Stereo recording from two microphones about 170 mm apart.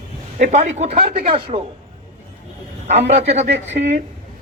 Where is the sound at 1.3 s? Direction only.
30° right (ahead or behind).